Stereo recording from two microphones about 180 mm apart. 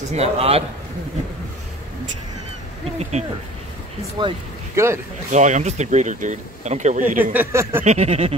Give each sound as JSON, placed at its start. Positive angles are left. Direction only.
{"t": 0.1, "sound": "speech", "side_deg": -35}
{"t": 3.0, "sound": "speech", "side_deg": -40}
{"t": 4.2, "sound": "speech", "side_deg": -25}
{"t": 4.7, "sound": "speech", "side_deg": -15}
{"t": 5.3, "sound": "speech", "side_deg": -40}
{"t": 7.3, "sound": "speech", "side_deg": -10}
{"t": 7.8, "sound": "speech", "side_deg": -40}